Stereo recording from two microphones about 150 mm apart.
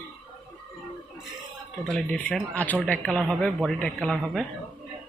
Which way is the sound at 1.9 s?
5° left (ahead or behind).